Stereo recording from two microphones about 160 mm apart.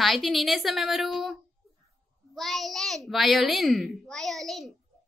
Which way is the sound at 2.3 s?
Centre (ahead or behind).